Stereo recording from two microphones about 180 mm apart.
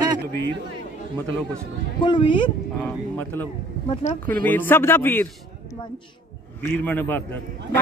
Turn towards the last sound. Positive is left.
turn(degrees=10)  # may be behind; listen again after turning